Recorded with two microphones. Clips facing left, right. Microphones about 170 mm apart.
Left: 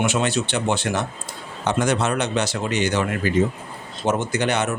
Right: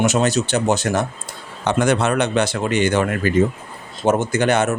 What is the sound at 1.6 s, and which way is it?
Speech, 65° right (ahead or behind).